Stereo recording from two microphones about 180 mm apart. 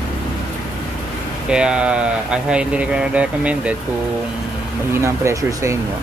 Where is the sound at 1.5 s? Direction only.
5° right (ahead or behind).